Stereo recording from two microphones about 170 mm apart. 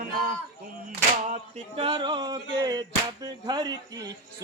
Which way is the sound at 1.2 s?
40° right (ahead or behind).